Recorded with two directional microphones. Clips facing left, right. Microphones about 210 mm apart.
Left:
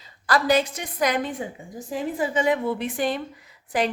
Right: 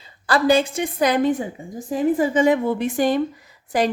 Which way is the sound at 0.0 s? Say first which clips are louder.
Right 4 dB; 30° right (ahead or behind).